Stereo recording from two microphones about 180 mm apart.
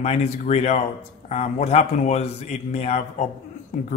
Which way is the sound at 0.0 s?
35° left (ahead or behind).